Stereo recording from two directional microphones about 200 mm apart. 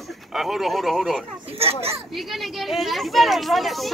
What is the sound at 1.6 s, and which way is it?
Speech, 30° right (ahead or behind).